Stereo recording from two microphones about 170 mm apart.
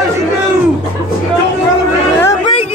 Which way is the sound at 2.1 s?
15° left (ahead or behind).